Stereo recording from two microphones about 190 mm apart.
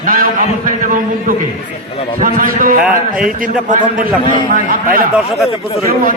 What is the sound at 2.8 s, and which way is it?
Speech, centre (ahead or behind).